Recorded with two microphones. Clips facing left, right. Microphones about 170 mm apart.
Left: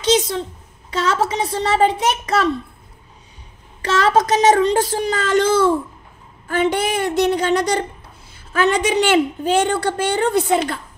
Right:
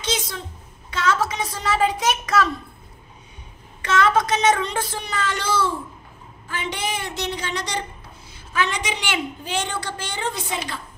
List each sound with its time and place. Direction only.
0.0 s speech: 35° left (ahead or behind)
3.8 s a woman's voice: 35° left (ahead or behind); by 10.8 s 60° left (ahead or behind)